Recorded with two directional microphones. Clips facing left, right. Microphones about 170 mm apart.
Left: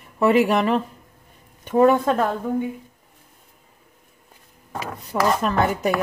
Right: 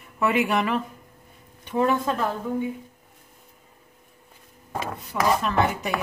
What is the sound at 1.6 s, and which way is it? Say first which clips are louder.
Speech: left 7 dB; 50° left (ahead or behind).